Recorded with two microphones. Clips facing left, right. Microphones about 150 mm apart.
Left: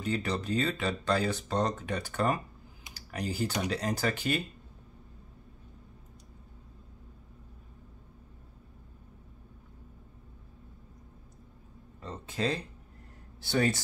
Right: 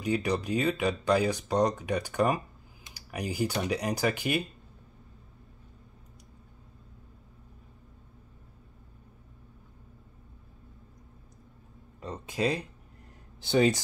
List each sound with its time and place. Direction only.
0.0 s speech: 15° right (ahead or behind)
2.9 s computer keyboard: 10° right (ahead or behind)
3.6 s speech: 15° right (ahead or behind)
12.0 s a sound: 15° right (ahead or behind)
13.4 s speech: 20° right (ahead or behind)